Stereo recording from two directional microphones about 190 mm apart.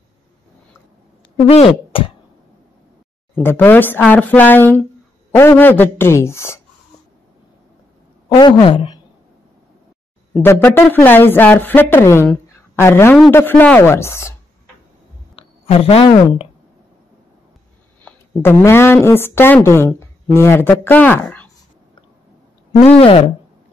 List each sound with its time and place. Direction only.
1.5 s speech: 30° left (ahead or behind)
3.3 s speech: 10° left (ahead or behind)
8.4 s speech: 25° left (ahead or behind)
10.3 s speech: 10° left (ahead or behind)
15.3 s a woman's voice: 30° left (ahead or behind)
18.0 s a woman's voice: 15° left (ahead or behind)
22.7 s speech: 35° left (ahead or behind)